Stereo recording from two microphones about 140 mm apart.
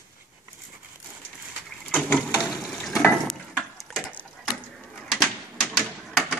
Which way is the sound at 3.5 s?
Centre (ahead or behind).